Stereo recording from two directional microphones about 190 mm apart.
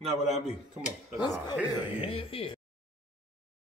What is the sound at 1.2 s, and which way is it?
Speech, 25° left (ahead or behind).